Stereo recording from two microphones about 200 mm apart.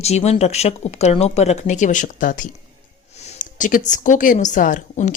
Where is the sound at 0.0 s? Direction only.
30° left (ahead or behind).